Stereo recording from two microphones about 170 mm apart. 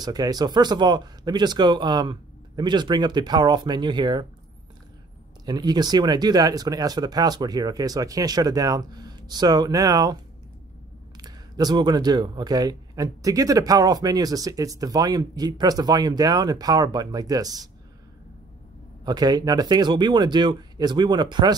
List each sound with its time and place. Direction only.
0.0 s speech: 25° right (ahead or behind)
5.4 s speech: 25° right (ahead or behind)
11.1 s speech: 25° right (ahead or behind)
19.0 s speech: 25° right (ahead or behind)